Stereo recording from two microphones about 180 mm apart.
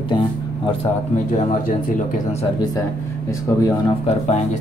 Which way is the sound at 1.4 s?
45° left (ahead or behind).